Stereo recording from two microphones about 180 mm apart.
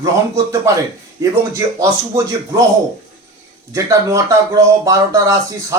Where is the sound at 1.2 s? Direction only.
15° right (ahead or behind).